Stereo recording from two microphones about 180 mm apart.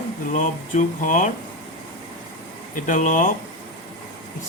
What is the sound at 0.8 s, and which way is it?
Speech, 45° left (ahead or behind).